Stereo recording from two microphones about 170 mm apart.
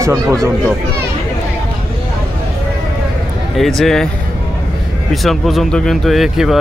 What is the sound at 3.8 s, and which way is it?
Speech, centre (ahead or behind).